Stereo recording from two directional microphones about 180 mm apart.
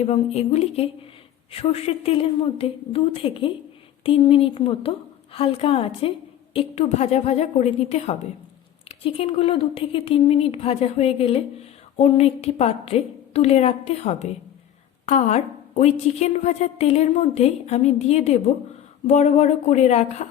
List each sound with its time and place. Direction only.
0.0 s a woman's voice: 35° left (ahead or behind)